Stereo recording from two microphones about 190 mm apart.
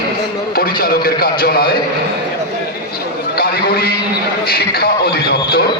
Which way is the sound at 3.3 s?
50° left (ahead or behind).